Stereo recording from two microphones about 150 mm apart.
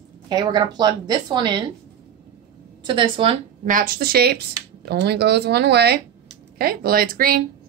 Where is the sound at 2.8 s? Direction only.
35° right (ahead or behind).